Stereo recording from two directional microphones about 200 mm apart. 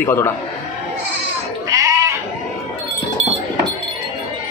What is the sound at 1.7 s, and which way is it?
Goat, 15° right (ahead or behind).